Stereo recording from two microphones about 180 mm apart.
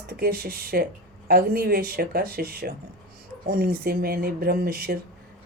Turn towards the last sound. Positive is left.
turn(degrees=-55)  # may be behind; listen again after turning